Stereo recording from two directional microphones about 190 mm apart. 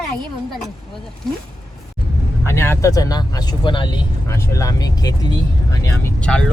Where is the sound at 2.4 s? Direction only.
10° left (ahead or behind).